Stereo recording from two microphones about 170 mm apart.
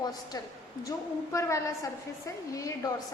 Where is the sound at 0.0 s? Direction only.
20° left (ahead or behind).